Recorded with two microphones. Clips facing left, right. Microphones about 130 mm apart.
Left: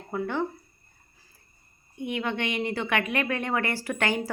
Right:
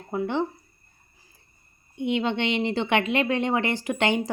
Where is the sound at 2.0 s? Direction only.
25° right (ahead or behind).